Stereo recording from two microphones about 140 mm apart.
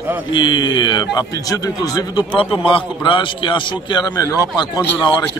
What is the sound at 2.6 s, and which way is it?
A man's voice, 35° left (ahead or behind).